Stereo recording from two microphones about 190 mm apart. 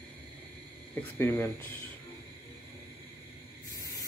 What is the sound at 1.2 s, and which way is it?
Speech, 10° left (ahead or behind).